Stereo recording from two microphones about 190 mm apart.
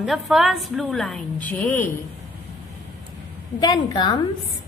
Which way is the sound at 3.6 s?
20° left (ahead or behind).